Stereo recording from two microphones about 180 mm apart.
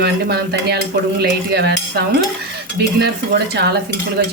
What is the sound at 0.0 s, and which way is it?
Speech, 65° right (ahead or behind).